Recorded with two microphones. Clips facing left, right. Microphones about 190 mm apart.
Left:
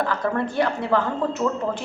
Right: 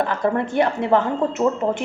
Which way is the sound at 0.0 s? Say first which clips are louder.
Right 3 dB; 20° right (ahead or behind).